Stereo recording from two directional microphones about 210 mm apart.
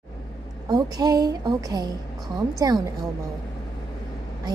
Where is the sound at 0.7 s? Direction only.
20° right (ahead or behind).